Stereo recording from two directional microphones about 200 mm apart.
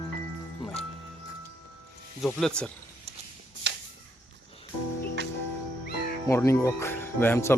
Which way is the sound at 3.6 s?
65° right (ahead or behind).